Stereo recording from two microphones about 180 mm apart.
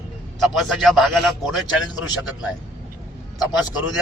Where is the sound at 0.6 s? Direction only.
Centre (ahead or behind).